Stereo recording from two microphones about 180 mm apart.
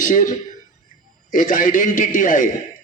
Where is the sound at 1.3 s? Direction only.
50° left (ahead or behind).